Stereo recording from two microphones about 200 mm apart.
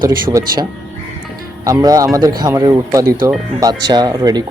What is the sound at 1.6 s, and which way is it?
Speech, 15° right (ahead or behind).